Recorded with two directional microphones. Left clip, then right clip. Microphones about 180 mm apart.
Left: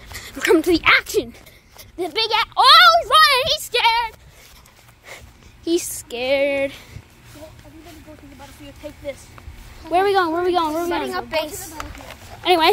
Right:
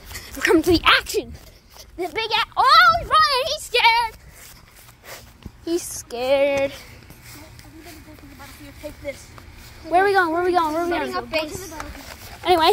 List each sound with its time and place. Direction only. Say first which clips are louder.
0.2 s speech: left 1 dB; 15° left (ahead or behind)
0.7 s speech: left 1 dB; centre (ahead or behind)
1.8 s a sound: left 2 dB; 15° left (ahead or behind)
2.1 s speech: left 3 dB; 20° left (ahead or behind)
2.5 s a woman's voice: left 3 dB; 35° left (ahead or behind)
3.7 s speech: right 2 dB; 5° right (ahead or behind)
5.7 s a woman's voice: left 4 dB; 30° left (ahead or behind)
6.0 s a woman's voice: right 2 dB; 15° left (ahead or behind)
9.8 s a woman's voice: even; 10° left (ahead or behind)
11.1 s a woman's voice: left 1 dB; 30° left (ahead or behind)
12.4 s a woman's voice: left 1 dB; 5° left (ahead or behind)